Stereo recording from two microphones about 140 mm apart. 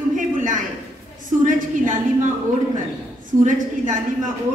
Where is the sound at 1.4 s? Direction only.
70° right (ahead or behind).